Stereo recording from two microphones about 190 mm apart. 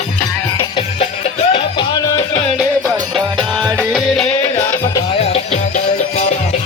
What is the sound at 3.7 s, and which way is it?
Music, centre (ahead or behind).